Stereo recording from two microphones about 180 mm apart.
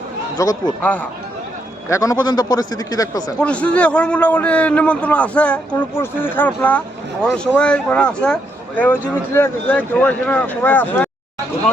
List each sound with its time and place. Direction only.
0.4 s a man's voice: 20° left (ahead or behind)
0.8 s speech: 10° left (ahead or behind)
1.9 s a man's voice: 20° left (ahead or behind)
3.4 s speech: 5° left (ahead or behind)